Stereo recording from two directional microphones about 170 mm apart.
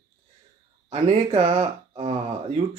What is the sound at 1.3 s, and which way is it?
Speech, 35° right (ahead or behind).